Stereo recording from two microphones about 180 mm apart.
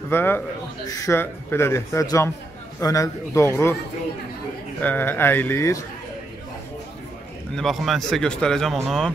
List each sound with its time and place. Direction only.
0.1 s a man's voice: 10° left (ahead or behind)
4.8 s a man's voice: 10° left (ahead or behind)
7.5 s speech: centre (ahead or behind)